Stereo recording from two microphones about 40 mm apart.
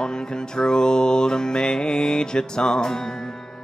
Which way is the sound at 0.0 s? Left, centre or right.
Centre.